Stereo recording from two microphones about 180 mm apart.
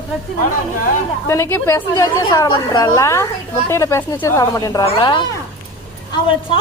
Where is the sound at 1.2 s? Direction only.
15° left (ahead or behind).